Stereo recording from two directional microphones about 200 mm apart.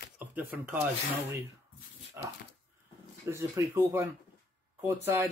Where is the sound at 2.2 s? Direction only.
10° right (ahead or behind).